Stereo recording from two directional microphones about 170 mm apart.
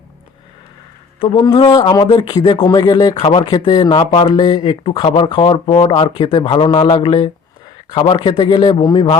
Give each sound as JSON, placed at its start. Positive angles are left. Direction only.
{"t": 1.5, "sound": "speech", "side_deg": 20}